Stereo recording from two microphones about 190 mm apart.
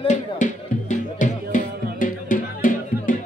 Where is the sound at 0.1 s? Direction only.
40° left (ahead or behind).